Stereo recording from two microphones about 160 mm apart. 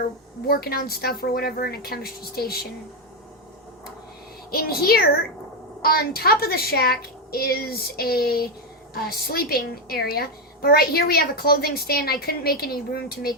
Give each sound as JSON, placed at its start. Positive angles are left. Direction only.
{"t": 0.4, "sound": "a woman's voice", "side_deg": 75}
{"t": 4.5, "sound": "a woman's voice", "side_deg": 70}